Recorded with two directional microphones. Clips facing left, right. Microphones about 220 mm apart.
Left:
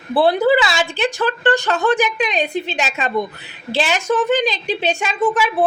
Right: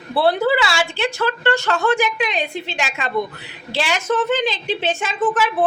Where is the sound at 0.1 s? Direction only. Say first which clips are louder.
Left 3 dB; 15° left (ahead or behind).